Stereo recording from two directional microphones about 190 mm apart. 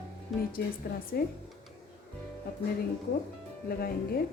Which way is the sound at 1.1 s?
55° left (ahead or behind).